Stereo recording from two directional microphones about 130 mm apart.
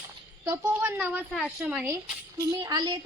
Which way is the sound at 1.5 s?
10° right (ahead or behind).